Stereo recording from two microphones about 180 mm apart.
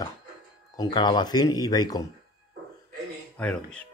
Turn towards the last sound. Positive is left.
turn(degrees=5)  # may be behind; listen again after turning